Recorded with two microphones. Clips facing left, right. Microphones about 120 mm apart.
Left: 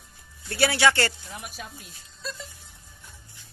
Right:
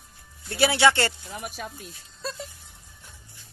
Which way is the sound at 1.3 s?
50° right (ahead or behind).